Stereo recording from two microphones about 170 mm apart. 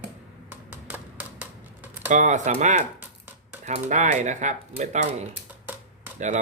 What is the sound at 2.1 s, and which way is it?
Speech, 45° right (ahead or behind).